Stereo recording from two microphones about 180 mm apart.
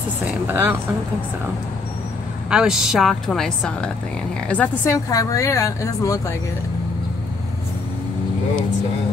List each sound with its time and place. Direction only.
0.5 s speech: 10° right (ahead or behind)
2.5 s a woman's voice: 5° right (ahead or behind); by 6.3 s 20° left (ahead or behind)